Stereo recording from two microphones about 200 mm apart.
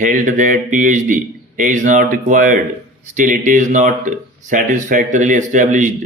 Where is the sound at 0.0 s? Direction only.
40° right (ahead or behind).